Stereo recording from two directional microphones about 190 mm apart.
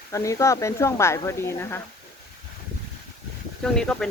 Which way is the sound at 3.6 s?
5° left (ahead or behind).